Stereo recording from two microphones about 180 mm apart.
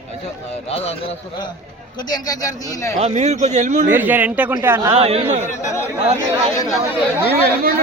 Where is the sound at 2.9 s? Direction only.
40° right (ahead or behind).